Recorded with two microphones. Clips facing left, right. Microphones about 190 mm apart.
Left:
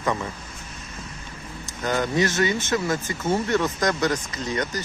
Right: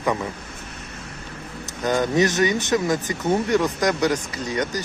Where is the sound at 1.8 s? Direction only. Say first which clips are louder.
Right 3 dB; 20° right (ahead or behind).